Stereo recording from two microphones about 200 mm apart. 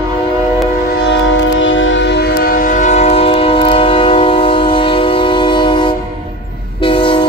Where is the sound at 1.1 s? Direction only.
70° left (ahead or behind).